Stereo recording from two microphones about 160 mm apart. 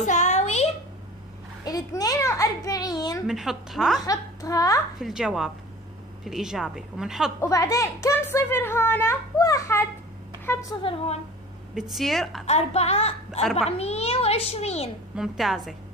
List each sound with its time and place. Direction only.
0.0 s a sound: 50° left (ahead or behind)
1.6 s a child's voice: 25° left (ahead or behind)
3.3 s a woman's voice: centre (ahead or behind)
4.0 s speech: 20° left (ahead or behind)
5.0 s a woman's voice: 5° right (ahead or behind)
7.3 s a woman's voice: 20° left (ahead or behind)
10.8 s a child's voice: 35° left (ahead or behind)
11.9 s a woman's voice: centre (ahead or behind)
12.4 s a child's voice: 40° left (ahead or behind)
13.4 s a woman's voice: centre (ahead or behind)
13.7 s a child's voice: 40° left (ahead or behind)
15.1 s a woman's voice: centre (ahead or behind)